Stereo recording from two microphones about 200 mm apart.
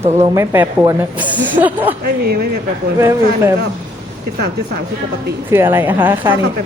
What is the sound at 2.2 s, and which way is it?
Speech, 50° right (ahead or behind).